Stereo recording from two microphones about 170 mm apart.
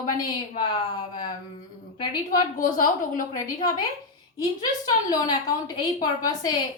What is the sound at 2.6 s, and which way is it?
Speech, 50° left (ahead or behind).